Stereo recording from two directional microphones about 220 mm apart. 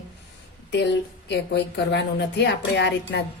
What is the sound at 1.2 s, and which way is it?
Speech, 50° left (ahead or behind).